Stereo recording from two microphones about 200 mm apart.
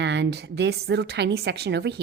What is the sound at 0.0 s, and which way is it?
A woman's voice, 60° right (ahead or behind).